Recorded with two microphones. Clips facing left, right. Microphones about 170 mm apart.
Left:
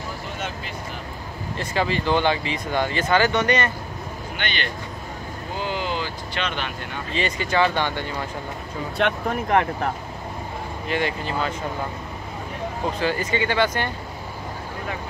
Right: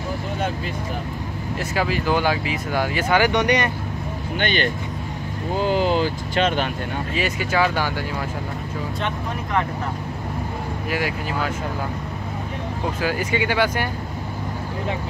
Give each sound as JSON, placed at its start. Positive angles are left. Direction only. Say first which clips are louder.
{"t": 1.6, "sound": "speech", "louder": "even", "side_deg": -5}
{"t": 4.4, "sound": "speech", "louder": "right 8 dB", "side_deg": -45}
{"t": 7.2, "sound": "speech", "louder": "even", "side_deg": -5}
{"t": 9.0, "sound": "speech", "louder": "left 7 dB", "side_deg": 70}
{"t": 10.9, "sound": "speech", "louder": "left 1 dB", "side_deg": -5}
{"t": 13.0, "sound": "speech", "louder": "right 1 dB", "side_deg": -10}